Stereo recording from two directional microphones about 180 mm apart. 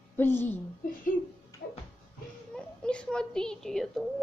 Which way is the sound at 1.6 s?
65° left (ahead or behind).